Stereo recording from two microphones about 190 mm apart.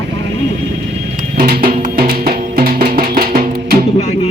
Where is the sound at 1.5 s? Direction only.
50° right (ahead or behind).